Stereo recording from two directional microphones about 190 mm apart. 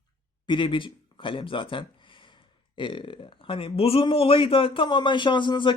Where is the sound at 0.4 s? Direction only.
25° left (ahead or behind).